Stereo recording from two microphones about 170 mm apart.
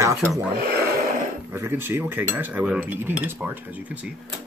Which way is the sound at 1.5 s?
15° right (ahead or behind).